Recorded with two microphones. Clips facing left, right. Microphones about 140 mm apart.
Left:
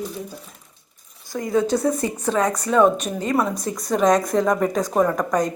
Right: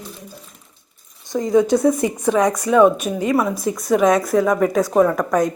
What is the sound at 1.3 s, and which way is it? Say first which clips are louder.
A woman's voice: right 5 dB; 20° right (ahead or behind).